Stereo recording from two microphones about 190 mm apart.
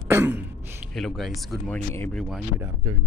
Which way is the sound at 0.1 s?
10° right (ahead or behind).